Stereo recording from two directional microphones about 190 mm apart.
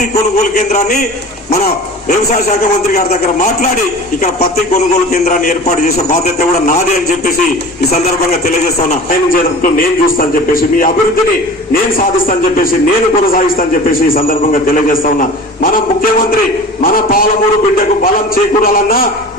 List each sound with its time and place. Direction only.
0.7 s a man's voice: 40° left (ahead or behind)
2.9 s a man's voice: 35° left (ahead or behind)
5.1 s a man's voice: 40° left (ahead or behind)
9.0 s a man's voice: 50° left (ahead or behind)
18.6 s a man's voice: 50° left (ahead or behind)